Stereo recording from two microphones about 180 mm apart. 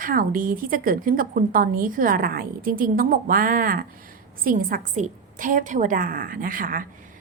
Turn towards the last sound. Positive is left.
turn(degrees=-50)  # may be behind; listen again after turning